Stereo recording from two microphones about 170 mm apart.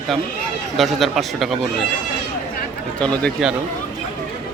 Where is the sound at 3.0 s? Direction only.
5° left (ahead or behind).